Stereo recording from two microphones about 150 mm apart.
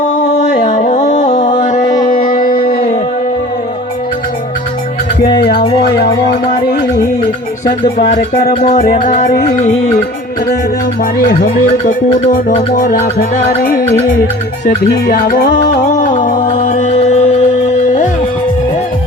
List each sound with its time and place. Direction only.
0.2 s a sound: 65° left (ahead or behind)
0.9 s music: 55° left (ahead or behind)
1.8 s music: 25° left (ahead or behind)
2.0 s music: 65° left (ahead or behind)
5.4 s music: 90° left
7.9 s music: 60° left (ahead or behind)
11.9 s music: 60° left (ahead or behind)
15.0 s music: 65° left (ahead or behind)
15.9 s music: 55° left (ahead or behind)